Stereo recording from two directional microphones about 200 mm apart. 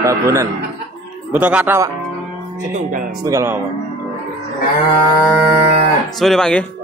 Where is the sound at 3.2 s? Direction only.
15° right (ahead or behind).